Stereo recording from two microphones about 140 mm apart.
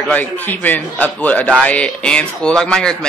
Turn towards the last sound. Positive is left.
turn(degrees=5)  # may be behind; listen again after turning